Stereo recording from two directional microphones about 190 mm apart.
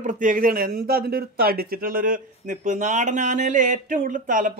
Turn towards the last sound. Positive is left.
turn(degrees=-45)  # may be behind; listen again after turning